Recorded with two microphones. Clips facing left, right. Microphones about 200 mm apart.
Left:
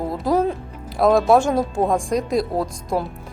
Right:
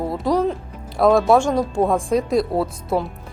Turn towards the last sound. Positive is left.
turn(degrees=0)  # may be behind; listen again after turning